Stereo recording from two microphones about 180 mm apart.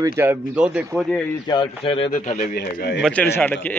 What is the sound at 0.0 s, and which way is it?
Speech, 15° right (ahead or behind).